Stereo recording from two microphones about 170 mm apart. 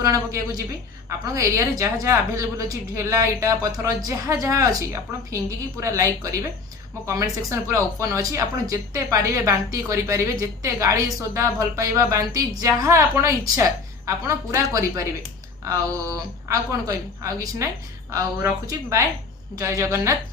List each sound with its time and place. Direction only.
0.0 s a woman's voice: 20° right (ahead or behind)